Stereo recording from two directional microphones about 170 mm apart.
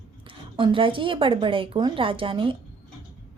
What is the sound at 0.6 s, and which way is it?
A woman's voice, 30° right (ahead or behind).